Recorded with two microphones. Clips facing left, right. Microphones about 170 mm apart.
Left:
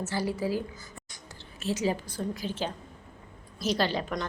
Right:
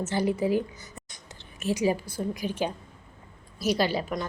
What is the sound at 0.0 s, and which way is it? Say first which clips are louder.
A woman's voice: right 4 dB; 20° right (ahead or behind).